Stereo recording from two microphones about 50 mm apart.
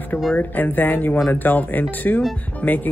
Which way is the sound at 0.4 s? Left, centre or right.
Left.